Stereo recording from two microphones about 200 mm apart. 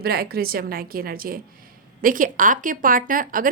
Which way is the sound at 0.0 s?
50° right (ahead or behind).